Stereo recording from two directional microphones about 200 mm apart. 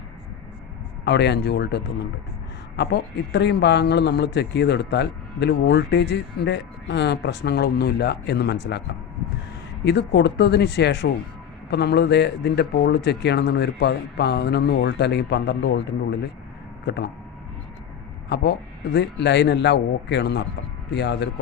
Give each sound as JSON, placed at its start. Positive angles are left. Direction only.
{"t": 1.0, "sound": "speech", "side_deg": 55}
{"t": 9.8, "sound": "speech", "side_deg": 55}
{"t": 18.9, "sound": "speech", "side_deg": 60}